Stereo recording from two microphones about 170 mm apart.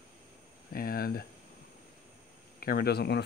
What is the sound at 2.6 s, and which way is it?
Speech, 65° left (ahead or behind).